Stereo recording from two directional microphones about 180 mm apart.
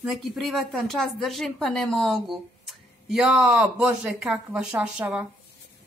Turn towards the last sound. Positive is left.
turn(degrees=-5)  # may be behind; listen again after turning